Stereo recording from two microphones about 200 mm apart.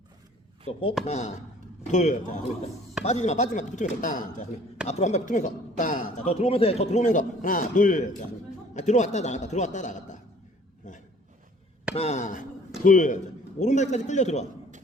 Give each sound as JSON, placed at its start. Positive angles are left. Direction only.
{"t": 0.6, "sound": "speech", "side_deg": 30}
{"t": 10.8, "sound": "a sound", "side_deg": 40}
{"t": 11.9, "sound": "speech", "side_deg": 35}